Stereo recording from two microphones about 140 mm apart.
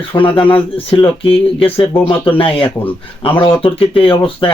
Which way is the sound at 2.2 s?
40° left (ahead or behind).